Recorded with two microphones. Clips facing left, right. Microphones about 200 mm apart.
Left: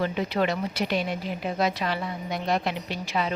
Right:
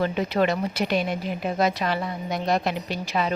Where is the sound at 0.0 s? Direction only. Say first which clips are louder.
Right 3 dB; 45° right (ahead or behind).